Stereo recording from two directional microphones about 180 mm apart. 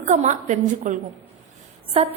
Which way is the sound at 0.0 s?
40° right (ahead or behind).